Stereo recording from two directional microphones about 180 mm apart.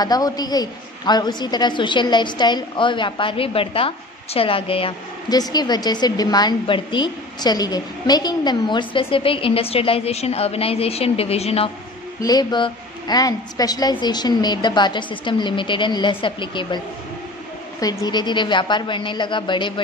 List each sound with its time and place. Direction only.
0.0 s a woman's voice: 20° left (ahead or behind)
12.2 s a woman's voice: 20° left (ahead or behind)